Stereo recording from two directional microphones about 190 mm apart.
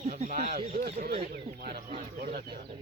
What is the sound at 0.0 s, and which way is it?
Speech, 40° right (ahead or behind).